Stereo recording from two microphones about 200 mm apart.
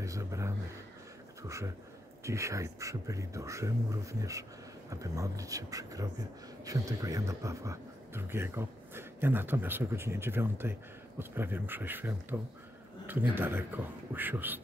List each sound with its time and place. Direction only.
0.0 s a man's voice: 15° right (ahead or behind)
2.2 s speech: 15° right (ahead or behind)